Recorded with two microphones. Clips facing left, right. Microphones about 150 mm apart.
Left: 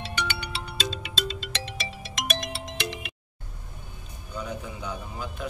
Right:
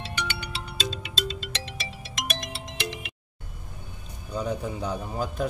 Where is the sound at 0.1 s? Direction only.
60° left (ahead or behind).